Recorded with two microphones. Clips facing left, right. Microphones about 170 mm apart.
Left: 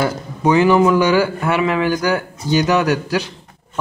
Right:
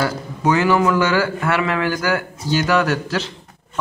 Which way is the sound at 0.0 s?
20° left (ahead or behind).